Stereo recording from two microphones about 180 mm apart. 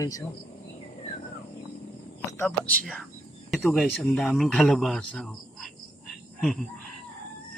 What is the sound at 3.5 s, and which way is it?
Speech, centre (ahead or behind).